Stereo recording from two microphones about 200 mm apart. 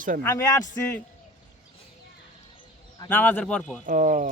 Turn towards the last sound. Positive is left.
turn(degrees=-40)  # may be behind; listen again after turning